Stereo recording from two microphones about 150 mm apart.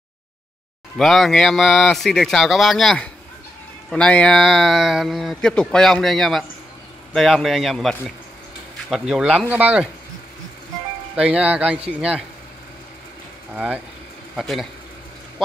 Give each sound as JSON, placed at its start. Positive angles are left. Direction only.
{"t": 0.9, "sound": "speech", "side_deg": 0}
{"t": 11.1, "sound": "speech", "side_deg": -5}
{"t": 14.3, "sound": "speech", "side_deg": 0}